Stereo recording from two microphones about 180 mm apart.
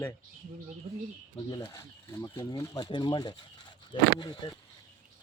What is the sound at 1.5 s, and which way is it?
Speech, 25° left (ahead or behind).